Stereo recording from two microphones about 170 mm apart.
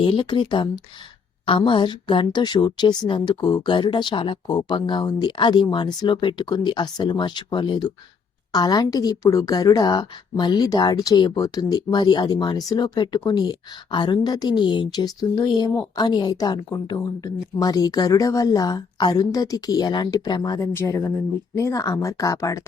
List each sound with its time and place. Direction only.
0.0 s a woman's voice: 30° left (ahead or behind)